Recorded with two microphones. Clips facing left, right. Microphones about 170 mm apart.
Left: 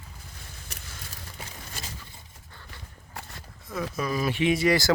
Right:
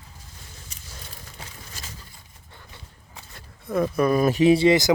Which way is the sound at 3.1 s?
70° left (ahead or behind).